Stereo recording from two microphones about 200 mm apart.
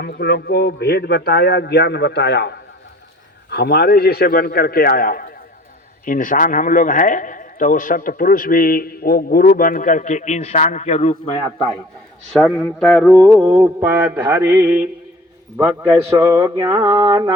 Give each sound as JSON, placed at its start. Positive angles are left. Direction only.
{"t": 0.0, "sound": "a man's voice", "side_deg": 55}
{"t": 12.5, "sound": "speech", "side_deg": 5}
{"t": 13.4, "sound": "mantra", "side_deg": -20}
{"t": 13.8, "sound": "speech", "side_deg": -10}